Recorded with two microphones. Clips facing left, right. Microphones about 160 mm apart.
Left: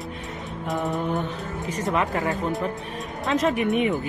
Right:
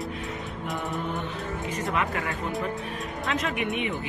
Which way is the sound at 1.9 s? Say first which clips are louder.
Left 5 dB; 35° left (ahead or behind).